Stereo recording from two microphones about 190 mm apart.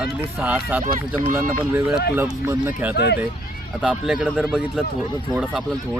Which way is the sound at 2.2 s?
15° right (ahead or behind).